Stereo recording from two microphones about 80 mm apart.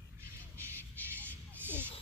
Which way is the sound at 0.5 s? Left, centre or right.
Left.